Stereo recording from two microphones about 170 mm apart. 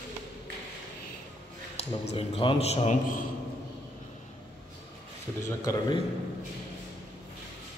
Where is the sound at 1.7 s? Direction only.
35° left (ahead or behind).